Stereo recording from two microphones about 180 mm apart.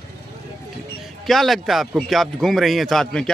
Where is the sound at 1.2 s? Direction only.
Centre (ahead or behind).